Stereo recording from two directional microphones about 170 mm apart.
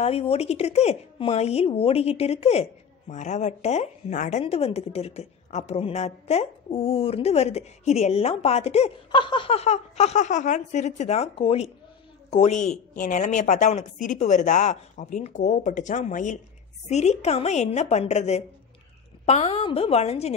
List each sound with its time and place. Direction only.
0.0 s a woman's voice: 35° left (ahead or behind)